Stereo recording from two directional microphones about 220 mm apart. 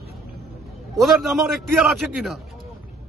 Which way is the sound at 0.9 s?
Centre (ahead or behind).